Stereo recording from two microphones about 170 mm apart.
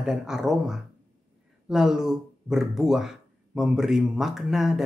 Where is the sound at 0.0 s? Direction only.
5° right (ahead or behind).